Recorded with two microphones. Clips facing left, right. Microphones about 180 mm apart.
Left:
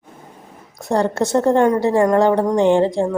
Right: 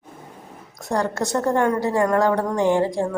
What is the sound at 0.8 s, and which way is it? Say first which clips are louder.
Speech: left 5 dB; 25° left (ahead or behind).